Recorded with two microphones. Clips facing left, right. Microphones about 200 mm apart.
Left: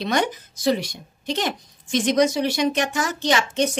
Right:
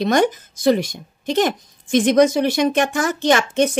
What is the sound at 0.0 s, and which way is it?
Speech, 45° right (ahead or behind).